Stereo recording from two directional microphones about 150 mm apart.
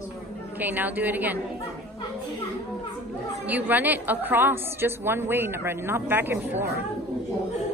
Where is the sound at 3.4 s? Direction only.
10° right (ahead or behind).